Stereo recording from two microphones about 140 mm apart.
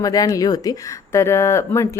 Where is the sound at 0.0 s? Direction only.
25° left (ahead or behind).